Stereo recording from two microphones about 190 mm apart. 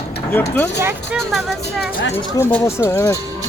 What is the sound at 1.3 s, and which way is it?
Speech, centre (ahead or behind).